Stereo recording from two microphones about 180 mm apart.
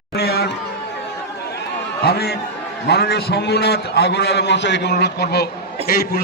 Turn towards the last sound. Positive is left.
turn(degrees=60)  # may be behind; listen again after turning